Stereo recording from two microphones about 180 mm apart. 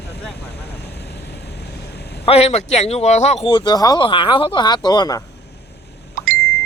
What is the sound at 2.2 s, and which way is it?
Speech, 35° left (ahead or behind).